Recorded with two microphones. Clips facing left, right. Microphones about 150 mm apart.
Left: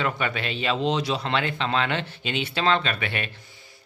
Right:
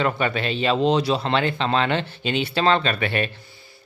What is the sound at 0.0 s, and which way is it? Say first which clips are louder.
Speech: right 4 dB; 35° right (ahead or behind).